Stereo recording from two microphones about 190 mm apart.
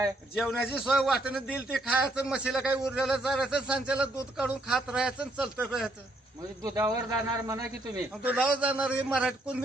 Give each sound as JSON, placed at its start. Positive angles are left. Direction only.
{"t": 0.3, "sound": "a man's voice", "side_deg": 0}
{"t": 6.6, "sound": "speech", "side_deg": -20}
{"t": 8.2, "sound": "a man's voice", "side_deg": -5}